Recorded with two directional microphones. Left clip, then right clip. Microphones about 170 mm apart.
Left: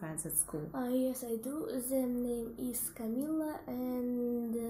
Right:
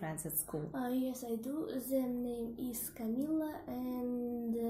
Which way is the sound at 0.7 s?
20° left (ahead or behind).